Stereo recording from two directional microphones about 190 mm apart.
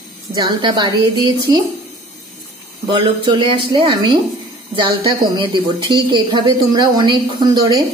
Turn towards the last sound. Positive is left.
turn(degrees=-20)  # may be behind; listen again after turning